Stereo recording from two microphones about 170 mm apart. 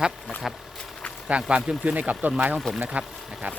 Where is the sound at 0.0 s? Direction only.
Centre (ahead or behind).